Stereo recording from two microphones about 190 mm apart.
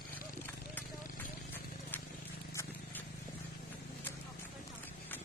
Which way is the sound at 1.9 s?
10° left (ahead or behind).